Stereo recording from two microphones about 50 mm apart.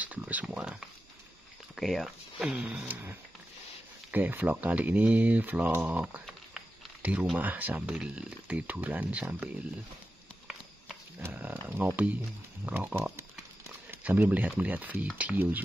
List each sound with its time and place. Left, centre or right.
0.0 s a sound: right
0.5 s a sound: centre
1.8 s speech: centre
2.0 s speech: centre
2.6 s speech: right
2.9 s speech: right
4.1 s speech: right
7.8 s speech: centre
8.5 s speech: right
11.6 s speech: right
12.9 s speech: right
14.0 s speech: right